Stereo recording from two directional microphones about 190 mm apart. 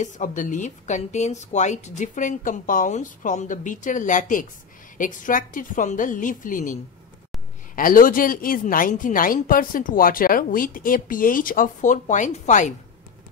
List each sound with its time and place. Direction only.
0.0 s a woman's voice: 40° left (ahead or behind)